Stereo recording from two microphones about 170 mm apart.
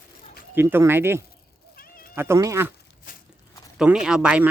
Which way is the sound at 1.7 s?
60° left (ahead or behind).